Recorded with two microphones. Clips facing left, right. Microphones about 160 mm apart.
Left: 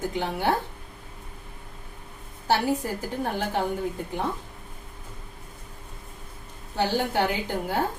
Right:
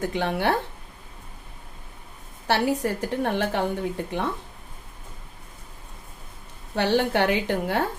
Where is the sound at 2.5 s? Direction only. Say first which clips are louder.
Right 1 dB; 70° right (ahead or behind).